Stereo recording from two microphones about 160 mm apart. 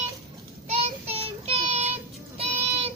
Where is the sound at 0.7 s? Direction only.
40° right (ahead or behind).